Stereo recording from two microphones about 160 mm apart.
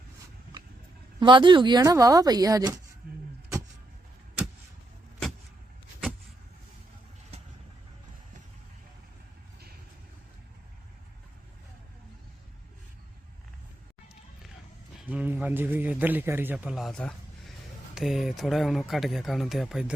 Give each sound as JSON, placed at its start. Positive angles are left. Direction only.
{"t": 1.2, "sound": "speech", "side_deg": -30}
{"t": 15.1, "sound": "a man's voice", "side_deg": -10}